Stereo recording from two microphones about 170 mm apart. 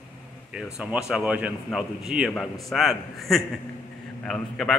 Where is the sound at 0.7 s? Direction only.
5° right (ahead or behind).